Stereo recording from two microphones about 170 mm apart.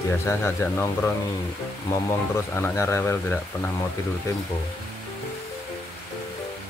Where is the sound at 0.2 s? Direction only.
15° left (ahead or behind).